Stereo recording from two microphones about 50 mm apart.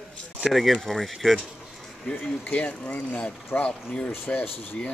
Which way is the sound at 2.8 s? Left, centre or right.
Left.